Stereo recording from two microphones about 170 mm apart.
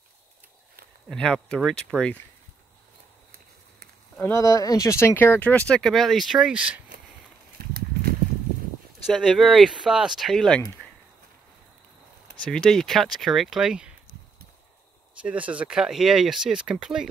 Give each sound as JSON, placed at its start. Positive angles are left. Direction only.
{"t": 1.0, "sound": "speech", "side_deg": 5}
{"t": 4.2, "sound": "speech", "side_deg": 15}
{"t": 7.6, "sound": "a sound", "side_deg": -65}
{"t": 9.1, "sound": "speech", "side_deg": 0}
{"t": 12.4, "sound": "speech", "side_deg": 5}
{"t": 15.2, "sound": "speech", "side_deg": -10}